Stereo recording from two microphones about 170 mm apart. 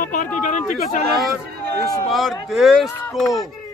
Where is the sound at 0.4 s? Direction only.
50° left (ahead or behind).